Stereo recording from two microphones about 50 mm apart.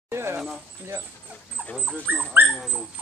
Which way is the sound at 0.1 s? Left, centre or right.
Right.